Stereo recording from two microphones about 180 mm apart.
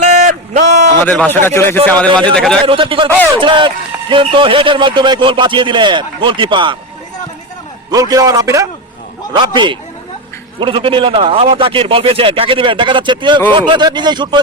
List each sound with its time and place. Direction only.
0.0 s a sound: 45° right (ahead or behind)
1.0 s speech: 5° left (ahead or behind)
2.6 s a man's voice: 30° right (ahead or behind)
7.9 s a man's voice: 20° right (ahead or behind)